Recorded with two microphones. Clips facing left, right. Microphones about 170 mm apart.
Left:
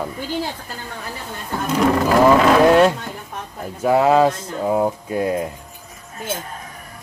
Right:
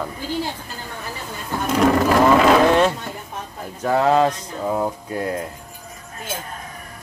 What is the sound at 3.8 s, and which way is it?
Speech, 10° left (ahead or behind).